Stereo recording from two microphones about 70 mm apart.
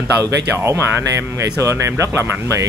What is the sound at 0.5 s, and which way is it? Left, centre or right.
Speech, right.